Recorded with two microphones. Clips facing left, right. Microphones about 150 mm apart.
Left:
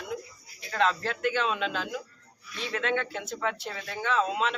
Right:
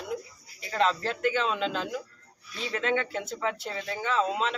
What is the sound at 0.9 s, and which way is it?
A man's voice, centre (ahead or behind).